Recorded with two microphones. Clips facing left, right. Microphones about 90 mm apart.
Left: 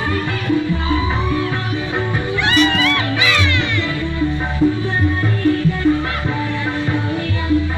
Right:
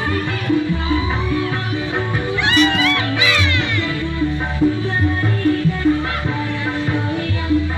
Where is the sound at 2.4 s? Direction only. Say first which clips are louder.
Even; 15° right (ahead or behind).